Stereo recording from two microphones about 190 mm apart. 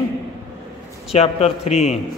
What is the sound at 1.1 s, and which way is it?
Speech, 35° left (ahead or behind).